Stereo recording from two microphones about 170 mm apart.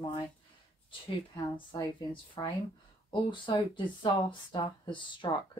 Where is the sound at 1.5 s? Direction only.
30° left (ahead or behind).